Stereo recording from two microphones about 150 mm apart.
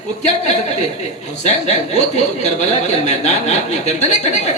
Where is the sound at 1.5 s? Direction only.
50° left (ahead or behind).